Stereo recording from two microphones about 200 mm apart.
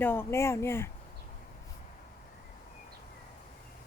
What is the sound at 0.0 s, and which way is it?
Speech, 10° left (ahead or behind).